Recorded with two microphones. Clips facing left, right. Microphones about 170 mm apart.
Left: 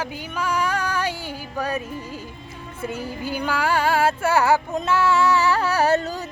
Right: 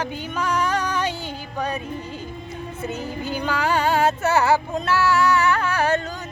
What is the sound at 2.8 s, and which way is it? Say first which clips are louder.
Music: left 1 dB; 10° left (ahead or behind).